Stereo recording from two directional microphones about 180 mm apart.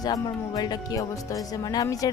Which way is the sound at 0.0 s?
20° left (ahead or behind).